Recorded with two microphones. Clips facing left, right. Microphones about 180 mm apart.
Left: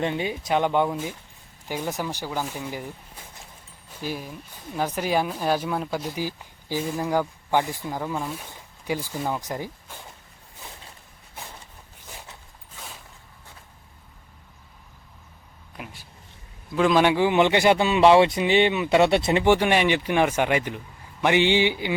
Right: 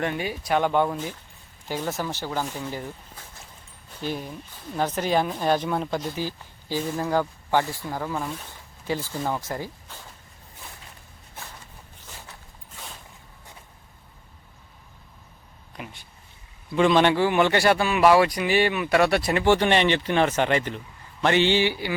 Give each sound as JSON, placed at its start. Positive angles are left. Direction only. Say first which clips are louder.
{"t": 0.0, "sound": "a man's voice", "louder": "left 1 dB", "side_deg": 20}
{"t": 4.0, "sound": "speech", "louder": "right 1 dB", "side_deg": 5}
{"t": 12.7, "sound": "a sound", "louder": "even", "side_deg": 0}
{"t": 15.7, "sound": "a sound", "louder": "right 1 dB", "side_deg": 5}
{"t": 16.7, "sound": "a man's voice", "louder": "even", "side_deg": 5}
{"t": 19.5, "sound": "speech", "louder": "even", "side_deg": 10}